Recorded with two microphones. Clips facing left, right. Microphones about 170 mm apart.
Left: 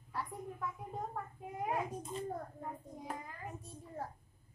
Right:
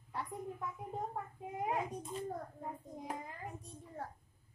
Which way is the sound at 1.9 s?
Centre (ahead or behind).